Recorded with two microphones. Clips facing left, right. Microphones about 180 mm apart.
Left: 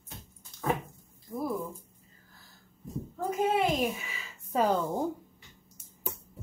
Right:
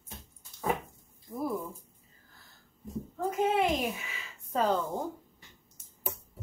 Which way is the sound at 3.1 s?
Centre (ahead or behind).